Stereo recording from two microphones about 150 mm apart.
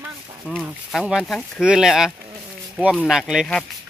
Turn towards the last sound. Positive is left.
turn(degrees=-5)  # may be behind; listen again after turning